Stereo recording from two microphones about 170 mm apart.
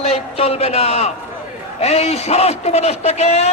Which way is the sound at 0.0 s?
35° left (ahead or behind).